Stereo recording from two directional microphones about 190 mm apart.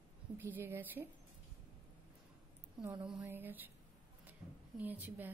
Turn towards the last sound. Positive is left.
turn(degrees=-10)  # may be behind; listen again after turning